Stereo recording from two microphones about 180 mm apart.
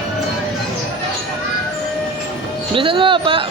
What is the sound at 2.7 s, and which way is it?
Music, 30° right (ahead or behind).